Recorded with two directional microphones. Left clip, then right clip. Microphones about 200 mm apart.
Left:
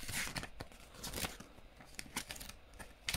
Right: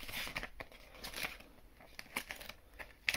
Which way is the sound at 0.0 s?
15° left (ahead or behind).